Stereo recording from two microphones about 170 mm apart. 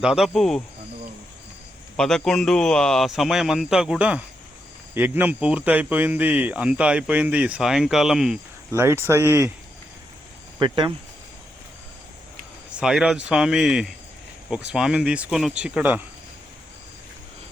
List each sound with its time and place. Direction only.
0.0 s speech: 5° right (ahead or behind)
2.0 s speech: 5° left (ahead or behind)
8.7 s speech: 15° right (ahead or behind)
10.6 s speech: 25° right (ahead or behind)
12.7 s speech: 5° right (ahead or behind)